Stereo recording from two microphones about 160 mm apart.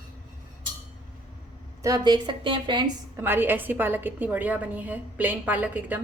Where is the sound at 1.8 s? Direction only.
25° right (ahead or behind).